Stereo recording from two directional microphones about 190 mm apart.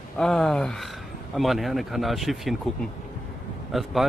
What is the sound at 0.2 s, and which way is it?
Speech, 5° left (ahead or behind).